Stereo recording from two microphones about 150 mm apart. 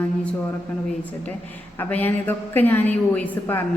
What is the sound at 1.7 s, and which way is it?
A woman's voice, 15° left (ahead or behind).